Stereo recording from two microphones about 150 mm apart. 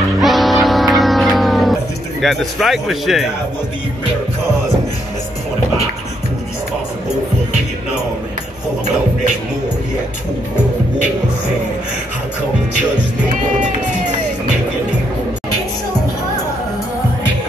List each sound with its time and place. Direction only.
0.2 s music: centre (ahead or behind)
2.2 s speech: centre (ahead or behind)
13.3 s music: 55° right (ahead or behind)